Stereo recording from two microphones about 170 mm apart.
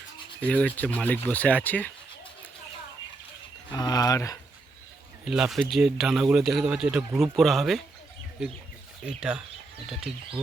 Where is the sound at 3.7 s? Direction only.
20° left (ahead or behind).